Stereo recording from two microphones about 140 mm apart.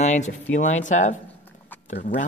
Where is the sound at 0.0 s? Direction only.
55° left (ahead or behind).